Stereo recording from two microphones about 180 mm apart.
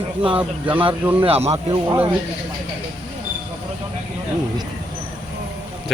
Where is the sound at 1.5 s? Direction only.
20° right (ahead or behind).